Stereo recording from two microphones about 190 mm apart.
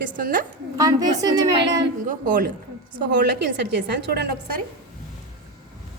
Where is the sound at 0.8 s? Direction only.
20° right (ahead or behind).